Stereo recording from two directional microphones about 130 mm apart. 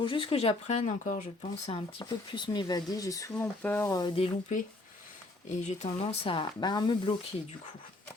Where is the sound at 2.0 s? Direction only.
35° left (ahead or behind).